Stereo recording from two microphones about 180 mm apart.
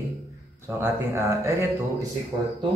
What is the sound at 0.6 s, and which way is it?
A man's voice, 15° right (ahead or behind).